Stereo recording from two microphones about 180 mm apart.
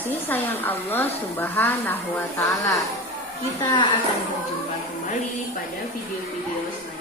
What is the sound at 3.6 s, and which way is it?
Speech, 25° left (ahead or behind).